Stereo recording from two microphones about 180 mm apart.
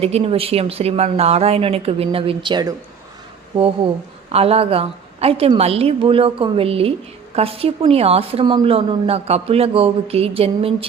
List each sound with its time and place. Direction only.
0.0 s a woman's voice: 35° right (ahead or behind)